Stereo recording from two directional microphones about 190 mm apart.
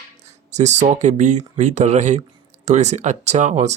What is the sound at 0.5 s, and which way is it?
Speech, 35° right (ahead or behind).